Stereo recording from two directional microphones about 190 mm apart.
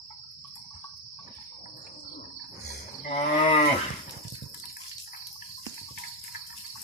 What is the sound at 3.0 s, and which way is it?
Livestock, 30° left (ahead or behind).